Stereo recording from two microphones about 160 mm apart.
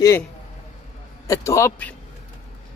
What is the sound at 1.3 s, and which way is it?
Speech, 20° left (ahead or behind).